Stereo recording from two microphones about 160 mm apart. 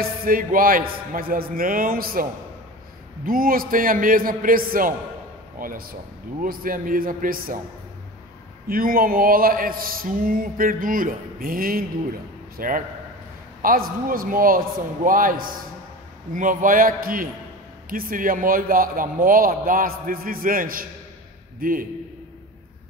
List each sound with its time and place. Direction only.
0.0 s speech: 65° right (ahead or behind)
3.3 s speech: 65° right (ahead or behind)
8.6 s speech: 65° right (ahead or behind)